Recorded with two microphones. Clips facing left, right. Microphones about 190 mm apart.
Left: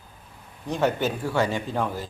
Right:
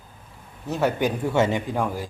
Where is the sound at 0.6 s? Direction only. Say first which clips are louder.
Right 1 dB; 5° right (ahead or behind).